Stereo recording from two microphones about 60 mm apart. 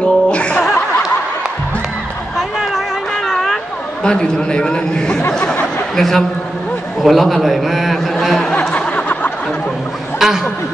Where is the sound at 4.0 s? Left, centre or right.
Centre.